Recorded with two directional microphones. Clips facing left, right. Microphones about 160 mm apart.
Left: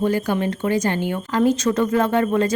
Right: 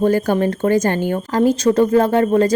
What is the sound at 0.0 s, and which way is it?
Speech, 45° right (ahead or behind).